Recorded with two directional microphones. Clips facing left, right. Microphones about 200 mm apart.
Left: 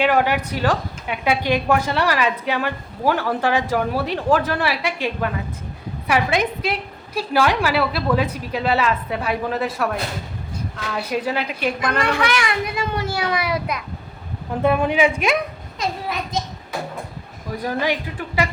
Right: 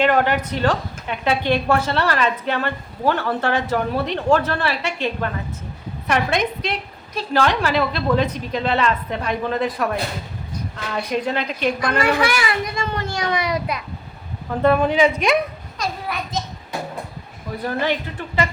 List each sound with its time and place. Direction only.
0.0 s a woman's voice: 10° left (ahead or behind)
11.9 s a woman's voice: 5° right (ahead or behind)
12.6 s a woman's voice: 10° left (ahead or behind)
14.6 s a woman's voice: 10° left (ahead or behind)
15.8 s a sound: 20° left (ahead or behind)
17.6 s a woman's voice: 10° left (ahead or behind)